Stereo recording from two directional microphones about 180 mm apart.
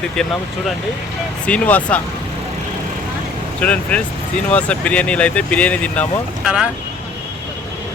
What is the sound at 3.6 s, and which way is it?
Speech, 5° left (ahead or behind).